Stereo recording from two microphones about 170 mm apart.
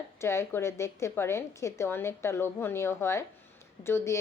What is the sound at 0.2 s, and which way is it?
A woman's voice, 15° left (ahead or behind).